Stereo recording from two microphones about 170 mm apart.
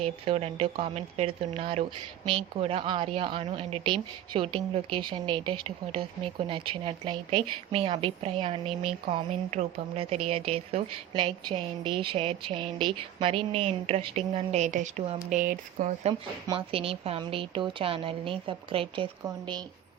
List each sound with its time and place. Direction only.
0.0 s speech: 35° right (ahead or behind)
16.5 s a woman's voice: 30° right (ahead or behind)